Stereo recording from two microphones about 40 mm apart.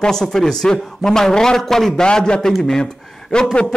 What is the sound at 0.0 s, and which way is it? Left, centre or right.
Speech, centre.